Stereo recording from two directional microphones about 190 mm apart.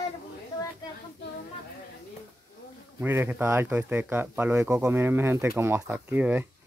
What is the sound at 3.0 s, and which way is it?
Speech, 10° right (ahead or behind).